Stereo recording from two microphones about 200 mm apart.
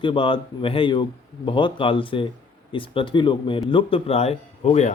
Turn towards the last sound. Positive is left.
turn(degrees=30)  # may be behind; listen again after turning